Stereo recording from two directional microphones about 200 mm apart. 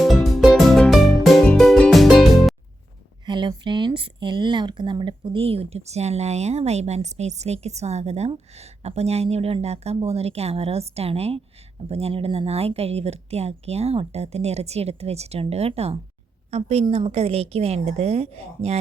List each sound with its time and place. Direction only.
0.0 s music: centre (ahead or behind)
3.2 s speech: 25° right (ahead or behind)